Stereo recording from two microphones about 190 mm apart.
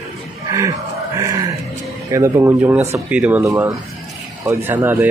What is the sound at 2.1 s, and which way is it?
Speech, 15° right (ahead or behind).